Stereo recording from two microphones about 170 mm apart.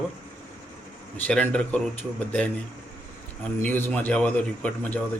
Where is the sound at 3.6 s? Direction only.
10° left (ahead or behind).